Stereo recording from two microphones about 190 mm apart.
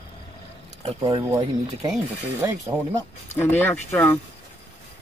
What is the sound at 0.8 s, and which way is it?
Speech, 25° right (ahead or behind).